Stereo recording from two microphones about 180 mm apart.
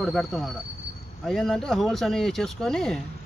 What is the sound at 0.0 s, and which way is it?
Speech, centre (ahead or behind).